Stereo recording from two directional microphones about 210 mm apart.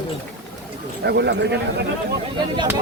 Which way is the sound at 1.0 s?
55° right (ahead or behind).